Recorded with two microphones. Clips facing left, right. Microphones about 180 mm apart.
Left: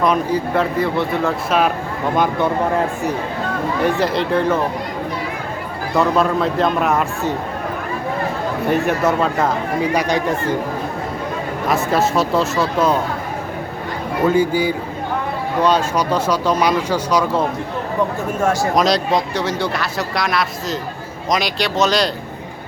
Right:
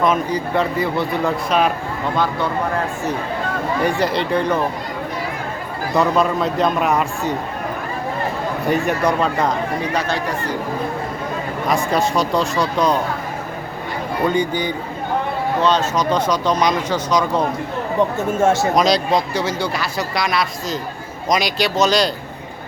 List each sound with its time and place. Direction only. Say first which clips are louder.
0.0 s speech: left 1 dB; centre (ahead or behind)
2.1 s speech: left 3 dB; 15° left (ahead or behind)
3.8 s speech: left 2 dB; centre (ahead or behind)
5.9 s speech: left 1 dB; centre (ahead or behind)
8.7 s speech: left 1 dB; centre (ahead or behind)
9.9 s speech: left 3 dB; 15° left (ahead or behind)
11.7 s speech: left 1 dB; 5° left (ahead or behind)
14.3 s speech: left 5 dB; 5° left (ahead or behind)
18.3 s speech: right 2 dB; 25° right (ahead or behind)
18.7 s speech: even; centre (ahead or behind)